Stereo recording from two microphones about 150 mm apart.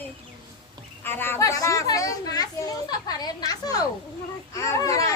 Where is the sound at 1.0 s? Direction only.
15° left (ahead or behind).